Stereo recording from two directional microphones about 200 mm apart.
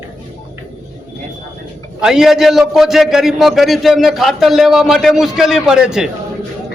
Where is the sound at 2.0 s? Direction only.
Centre (ahead or behind).